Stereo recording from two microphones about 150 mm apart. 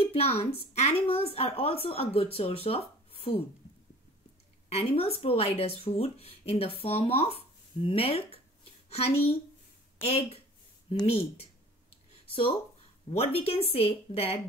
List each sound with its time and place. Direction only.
0.0 s a woman's voice: 40° left (ahead or behind)
4.6 s a woman's voice: 40° left (ahead or behind)
8.8 s a sound: 40° left (ahead or behind)
10.0 s a woman's voice: 40° left (ahead or behind)
12.3 s a woman's voice: 35° left (ahead or behind)